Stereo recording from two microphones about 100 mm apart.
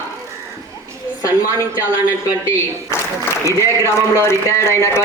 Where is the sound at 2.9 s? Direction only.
25° left (ahead or behind).